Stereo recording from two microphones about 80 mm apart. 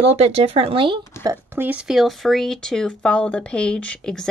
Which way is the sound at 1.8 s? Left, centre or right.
Centre.